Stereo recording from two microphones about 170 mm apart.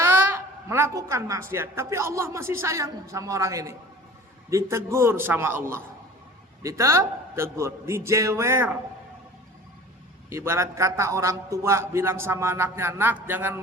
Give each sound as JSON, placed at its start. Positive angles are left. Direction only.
{"t": 0.0, "sound": "a woman's voice", "side_deg": -15}
{"t": 10.2, "sound": "a man's voice", "side_deg": -15}